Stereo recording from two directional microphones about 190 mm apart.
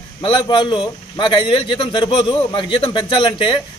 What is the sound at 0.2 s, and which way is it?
A man's voice, 25° left (ahead or behind).